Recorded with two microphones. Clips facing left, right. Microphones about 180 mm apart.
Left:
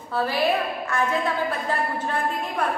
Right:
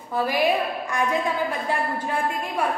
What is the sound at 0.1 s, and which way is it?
A woman's voice, 15° right (ahead or behind).